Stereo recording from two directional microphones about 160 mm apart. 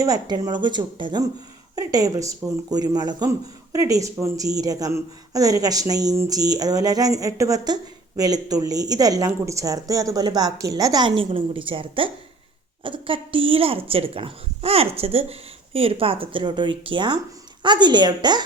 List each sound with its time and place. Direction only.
0.0 s a woman's voice: 25° right (ahead or behind)